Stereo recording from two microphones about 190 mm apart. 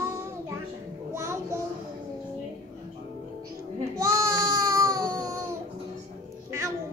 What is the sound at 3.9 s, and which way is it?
Baby cry, 15° right (ahead or behind).